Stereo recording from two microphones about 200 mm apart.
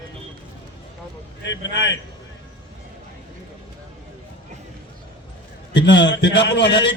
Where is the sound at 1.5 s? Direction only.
65° left (ahead or behind).